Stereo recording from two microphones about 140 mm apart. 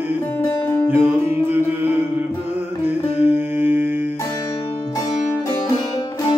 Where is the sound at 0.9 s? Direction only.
15° right (ahead or behind).